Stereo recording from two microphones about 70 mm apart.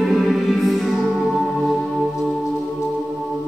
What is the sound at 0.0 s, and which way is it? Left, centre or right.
Music, centre.